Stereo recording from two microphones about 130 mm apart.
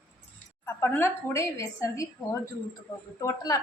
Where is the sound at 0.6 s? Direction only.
20° left (ahead or behind).